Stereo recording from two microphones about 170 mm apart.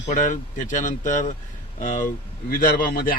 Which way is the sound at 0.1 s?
45° left (ahead or behind).